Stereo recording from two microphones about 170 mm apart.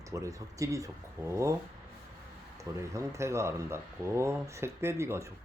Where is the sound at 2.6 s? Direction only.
20° right (ahead or behind).